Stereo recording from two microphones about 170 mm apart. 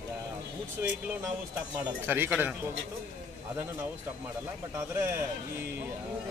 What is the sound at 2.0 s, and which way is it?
Speech, 10° right (ahead or behind).